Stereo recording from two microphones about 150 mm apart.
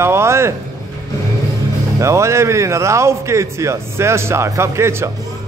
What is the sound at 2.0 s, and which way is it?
A man's voice, 20° right (ahead or behind).